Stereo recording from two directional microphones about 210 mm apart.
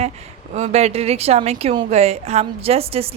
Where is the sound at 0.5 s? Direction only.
30° right (ahead or behind).